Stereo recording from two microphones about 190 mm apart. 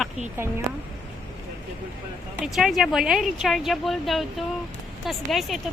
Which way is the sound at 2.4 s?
Centre (ahead or behind).